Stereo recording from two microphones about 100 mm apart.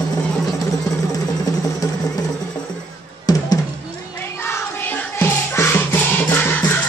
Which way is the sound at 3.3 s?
40° left (ahead or behind).